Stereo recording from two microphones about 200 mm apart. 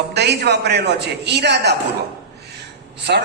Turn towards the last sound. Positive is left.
turn(degrees=-55)  # may be behind; listen again after turning